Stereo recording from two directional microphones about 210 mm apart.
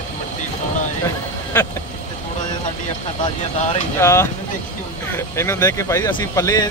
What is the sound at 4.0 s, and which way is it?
Speech, 15° left (ahead or behind).